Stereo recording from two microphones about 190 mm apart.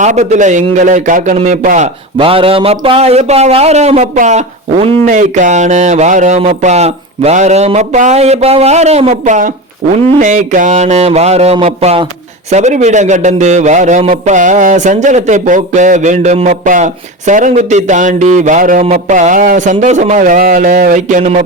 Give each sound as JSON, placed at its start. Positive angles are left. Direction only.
{"t": 0.0, "sound": "a man's voice", "side_deg": -40}
{"t": 2.1, "sound": "a man's voice", "side_deg": -30}